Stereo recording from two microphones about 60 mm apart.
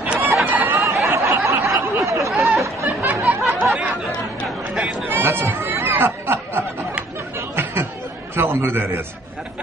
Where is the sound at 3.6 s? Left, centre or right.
Centre.